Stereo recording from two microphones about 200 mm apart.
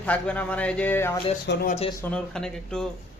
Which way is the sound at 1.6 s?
35° left (ahead or behind).